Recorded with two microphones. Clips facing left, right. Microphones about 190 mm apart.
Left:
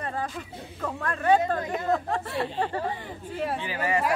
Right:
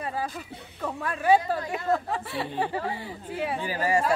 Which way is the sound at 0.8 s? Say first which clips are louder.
Right 1 dB; 10° right (ahead or behind).